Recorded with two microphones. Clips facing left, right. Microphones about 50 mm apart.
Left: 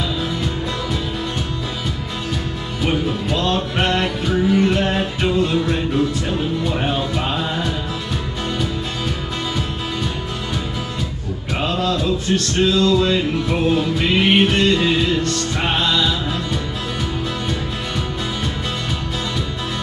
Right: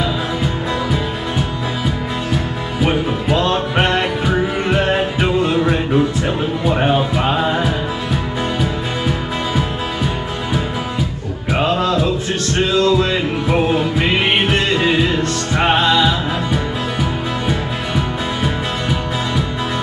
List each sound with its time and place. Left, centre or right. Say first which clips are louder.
2.8 s music: right 3 dB; centre
11.5 s music: right 4 dB; centre
17.5 s music: right 4 dB; centre